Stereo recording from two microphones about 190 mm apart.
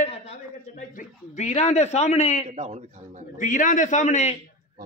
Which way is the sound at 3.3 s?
45° left (ahead or behind).